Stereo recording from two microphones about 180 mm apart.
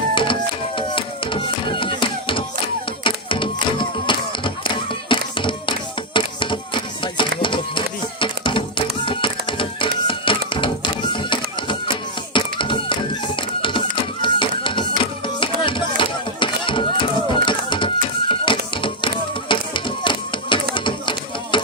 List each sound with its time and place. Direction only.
0.1 s music: 30° left (ahead or behind)
3.0 s a sound: 30° left (ahead or behind)
16.0 s chop: 25° left (ahead or behind)